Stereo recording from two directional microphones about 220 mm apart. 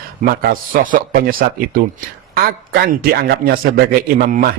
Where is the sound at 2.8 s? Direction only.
45° right (ahead or behind).